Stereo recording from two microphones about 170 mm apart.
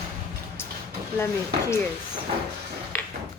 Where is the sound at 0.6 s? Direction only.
15° left (ahead or behind).